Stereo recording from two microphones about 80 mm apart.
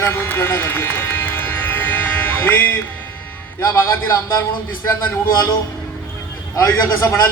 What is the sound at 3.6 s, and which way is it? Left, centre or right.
Speech, left.